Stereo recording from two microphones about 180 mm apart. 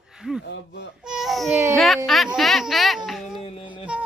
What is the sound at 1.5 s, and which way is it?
Baby cry, 15° right (ahead or behind).